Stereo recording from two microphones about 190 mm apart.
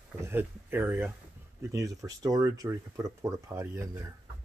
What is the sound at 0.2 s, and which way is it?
Speech, 10° right (ahead or behind).